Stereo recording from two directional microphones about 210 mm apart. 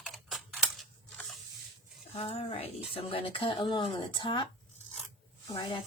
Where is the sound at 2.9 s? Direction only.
25° left (ahead or behind).